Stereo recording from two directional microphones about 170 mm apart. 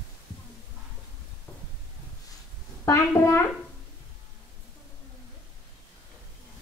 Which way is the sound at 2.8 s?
15° left (ahead or behind).